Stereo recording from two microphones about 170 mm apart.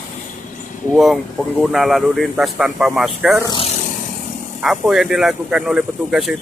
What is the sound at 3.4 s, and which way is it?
Vehicle, 30° left (ahead or behind).